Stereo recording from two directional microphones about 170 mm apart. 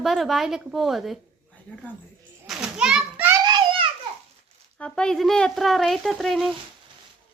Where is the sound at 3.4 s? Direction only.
25° right (ahead or behind).